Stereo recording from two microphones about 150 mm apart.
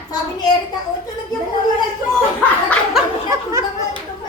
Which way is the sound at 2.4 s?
5° left (ahead or behind).